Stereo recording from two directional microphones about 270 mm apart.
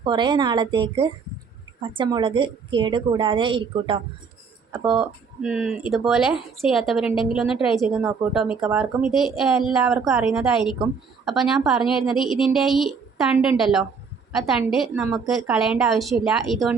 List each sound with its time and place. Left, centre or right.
0.0 s a woman's voice: centre
4.7 s speech: centre